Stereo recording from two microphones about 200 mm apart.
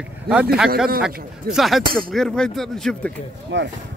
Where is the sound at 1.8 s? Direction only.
45° right (ahead or behind).